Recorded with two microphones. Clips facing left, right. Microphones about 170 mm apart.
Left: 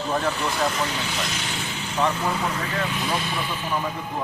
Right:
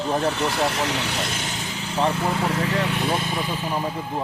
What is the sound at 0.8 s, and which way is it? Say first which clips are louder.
Speech: right 2 dB; 75° right (ahead or behind).